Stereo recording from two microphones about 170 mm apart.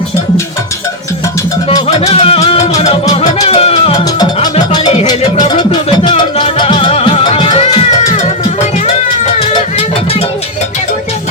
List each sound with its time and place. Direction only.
2.0 s music: 35° left (ahead or behind)
5.7 s music: 30° left (ahead or behind)
8.1 s music: 45° left (ahead or behind)